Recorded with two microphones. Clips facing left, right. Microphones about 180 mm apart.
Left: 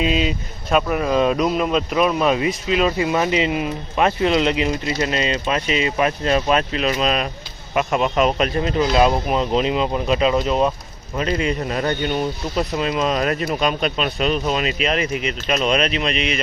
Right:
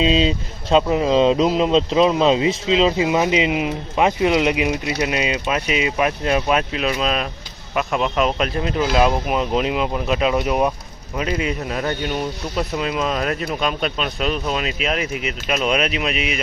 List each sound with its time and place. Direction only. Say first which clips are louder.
0.0 s speech: right 3 dB; 25° right (ahead or behind); by 16.4 s 5° right (ahead or behind)